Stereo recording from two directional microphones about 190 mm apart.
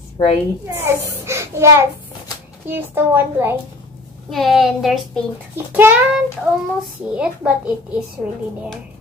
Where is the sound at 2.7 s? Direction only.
10° right (ahead or behind).